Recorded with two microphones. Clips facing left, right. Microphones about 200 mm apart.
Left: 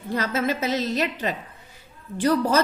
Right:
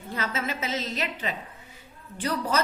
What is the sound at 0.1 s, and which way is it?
A woman's voice, 40° left (ahead or behind).